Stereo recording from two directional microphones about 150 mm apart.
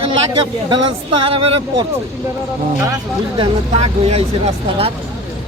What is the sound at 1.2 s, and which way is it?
Speech, 35° right (ahead or behind).